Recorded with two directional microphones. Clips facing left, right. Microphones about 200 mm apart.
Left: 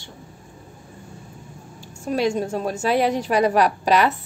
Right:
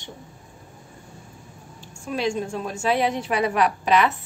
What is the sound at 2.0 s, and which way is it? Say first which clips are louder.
A woman's voice: left 4 dB; 40° left (ahead or behind).